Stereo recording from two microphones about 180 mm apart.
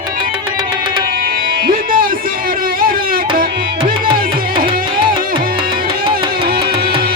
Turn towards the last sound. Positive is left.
turn(degrees=-25)  # may be behind; listen again after turning